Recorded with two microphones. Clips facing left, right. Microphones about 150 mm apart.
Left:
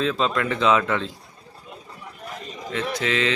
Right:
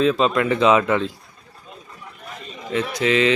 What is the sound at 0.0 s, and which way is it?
Speech, 15° right (ahead or behind).